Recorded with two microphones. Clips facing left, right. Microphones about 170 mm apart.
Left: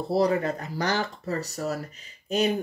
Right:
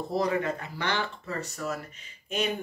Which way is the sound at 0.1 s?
35° left (ahead or behind).